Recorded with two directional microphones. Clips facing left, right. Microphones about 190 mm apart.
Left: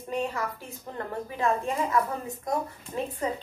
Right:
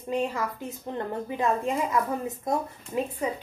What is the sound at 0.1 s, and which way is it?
A woman's voice, 20° right (ahead or behind).